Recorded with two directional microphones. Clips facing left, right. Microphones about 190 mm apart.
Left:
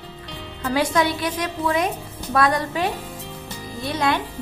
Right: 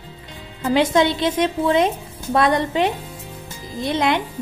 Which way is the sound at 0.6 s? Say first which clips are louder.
Right 4 dB; 25° right (ahead or behind).